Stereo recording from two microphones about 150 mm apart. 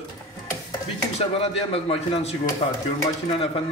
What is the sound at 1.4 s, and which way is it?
Speech, 40° left (ahead or behind).